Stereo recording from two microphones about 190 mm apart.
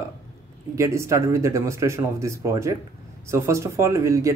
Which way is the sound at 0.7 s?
15° right (ahead or behind).